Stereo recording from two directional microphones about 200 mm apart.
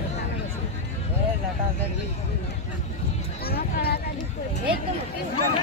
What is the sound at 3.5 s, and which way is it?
Speech, 50° left (ahead or behind).